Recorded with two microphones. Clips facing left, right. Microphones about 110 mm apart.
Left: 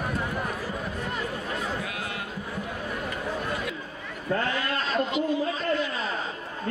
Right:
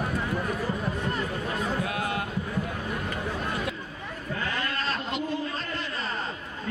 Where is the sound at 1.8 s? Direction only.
40° right (ahead or behind).